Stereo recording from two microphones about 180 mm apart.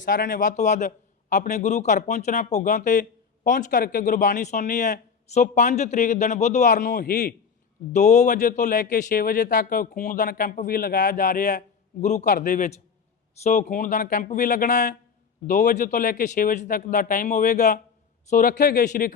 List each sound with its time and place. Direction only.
0.0 s a man's voice: 50° left (ahead or behind)
7.9 s a man's voice: 40° left (ahead or behind)